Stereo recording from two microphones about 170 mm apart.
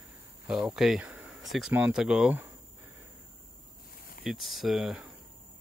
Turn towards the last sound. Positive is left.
turn(degrees=0)  # may be behind; listen again after turning